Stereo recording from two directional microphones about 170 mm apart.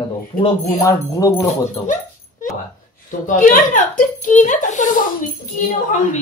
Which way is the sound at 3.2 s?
50° left (ahead or behind).